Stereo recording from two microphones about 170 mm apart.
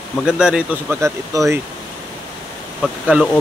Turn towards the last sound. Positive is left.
turn(degrees=-5)  # may be behind; listen again after turning